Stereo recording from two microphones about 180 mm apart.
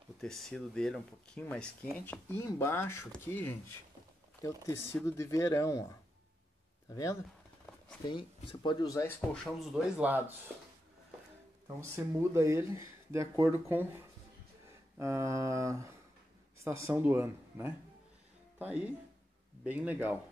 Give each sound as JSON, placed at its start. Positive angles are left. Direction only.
{"t": 0.2, "sound": "speech", "side_deg": 0}
{"t": 6.9, "sound": "speech", "side_deg": 20}
{"t": 9.3, "sound": "speech", "side_deg": 0}
{"t": 11.6, "sound": "speech", "side_deg": -15}